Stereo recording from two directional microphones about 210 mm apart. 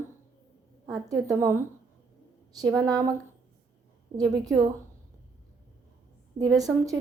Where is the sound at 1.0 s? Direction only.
15° right (ahead or behind).